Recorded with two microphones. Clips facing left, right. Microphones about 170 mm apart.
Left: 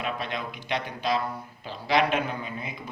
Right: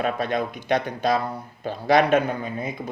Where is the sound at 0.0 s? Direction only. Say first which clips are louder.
Right 8 dB; 45° right (ahead or behind).